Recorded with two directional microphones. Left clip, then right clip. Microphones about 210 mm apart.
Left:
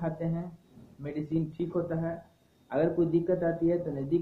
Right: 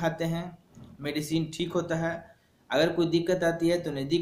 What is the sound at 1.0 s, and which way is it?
Speech, 15° right (ahead or behind).